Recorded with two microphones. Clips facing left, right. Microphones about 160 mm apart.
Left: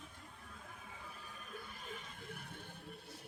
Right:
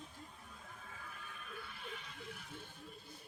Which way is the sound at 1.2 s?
35° left (ahead or behind).